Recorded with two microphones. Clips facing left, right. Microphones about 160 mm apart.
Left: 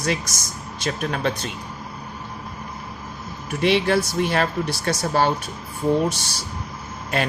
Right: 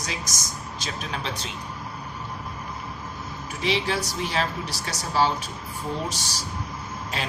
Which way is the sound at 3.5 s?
60° left (ahead or behind).